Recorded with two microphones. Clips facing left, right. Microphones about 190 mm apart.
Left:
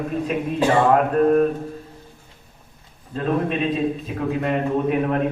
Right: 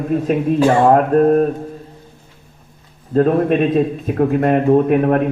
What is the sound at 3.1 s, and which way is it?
A man's voice, 50° right (ahead or behind).